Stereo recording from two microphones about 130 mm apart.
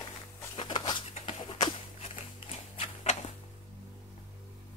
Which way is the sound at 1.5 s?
45° left (ahead or behind).